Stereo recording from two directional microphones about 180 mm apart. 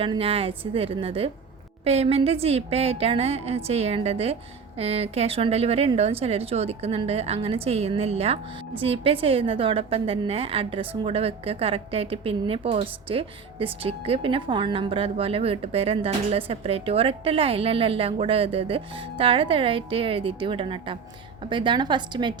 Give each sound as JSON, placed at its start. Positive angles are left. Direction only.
{"t": 0.0, "sound": "a woman's voice", "side_deg": -30}